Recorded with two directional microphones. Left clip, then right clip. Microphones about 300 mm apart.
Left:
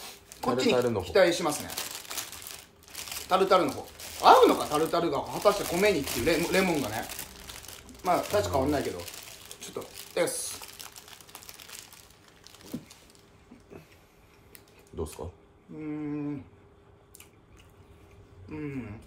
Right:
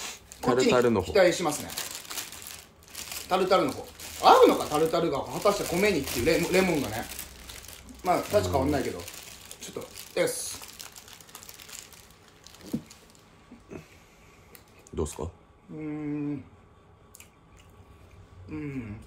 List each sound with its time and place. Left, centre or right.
0.3 s a sound: centre
0.7 s speech: right
1.0 s crumpling: centre
4.2 s speech: centre
9.6 s boiling: centre
15.8 s speech: centre
18.5 s speech: centre